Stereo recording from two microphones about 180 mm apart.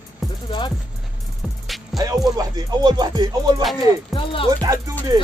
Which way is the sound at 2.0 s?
20° right (ahead or behind).